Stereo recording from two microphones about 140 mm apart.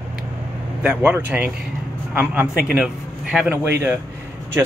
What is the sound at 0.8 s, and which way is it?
Speech, 10° right (ahead or behind).